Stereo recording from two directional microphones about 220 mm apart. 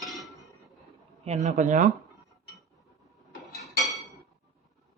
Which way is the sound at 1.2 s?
30° right (ahead or behind).